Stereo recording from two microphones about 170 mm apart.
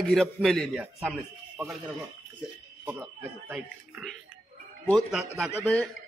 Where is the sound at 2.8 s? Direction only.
10° right (ahead or behind).